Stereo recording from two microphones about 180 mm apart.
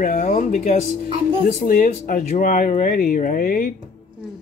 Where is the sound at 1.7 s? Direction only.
50° left (ahead or behind).